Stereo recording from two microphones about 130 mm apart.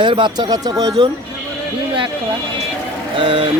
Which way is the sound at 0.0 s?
40° right (ahead or behind).